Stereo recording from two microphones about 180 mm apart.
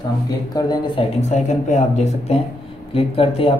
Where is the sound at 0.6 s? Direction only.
25° left (ahead or behind).